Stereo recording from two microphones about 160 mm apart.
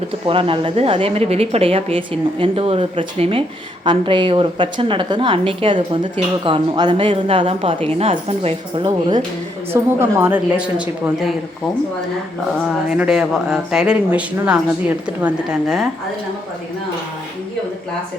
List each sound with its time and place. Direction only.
0.3 s a woman's voice: 35° right (ahead or behind)
9.7 s a woman's voice: 15° right (ahead or behind)
13.0 s speech: 5° right (ahead or behind)